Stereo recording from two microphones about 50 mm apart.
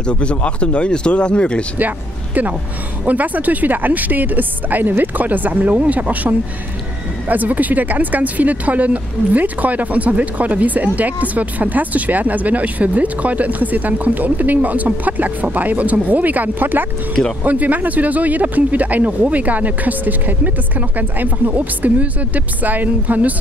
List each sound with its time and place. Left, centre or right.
0.0 s speech: left
3.1 s speech: right